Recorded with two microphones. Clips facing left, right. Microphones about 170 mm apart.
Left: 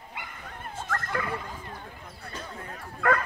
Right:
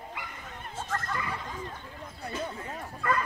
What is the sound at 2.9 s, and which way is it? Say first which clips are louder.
Bow-wow: left 4 dB; 65° left (ahead or behind).